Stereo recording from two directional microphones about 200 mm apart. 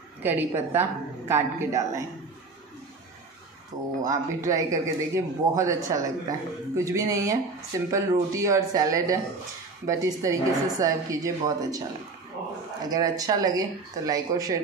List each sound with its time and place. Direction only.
0.2 s a man's voice: 10° right (ahead or behind)
4.0 s a man's voice: 15° right (ahead or behind)
12.9 s a man's voice: 20° right (ahead or behind)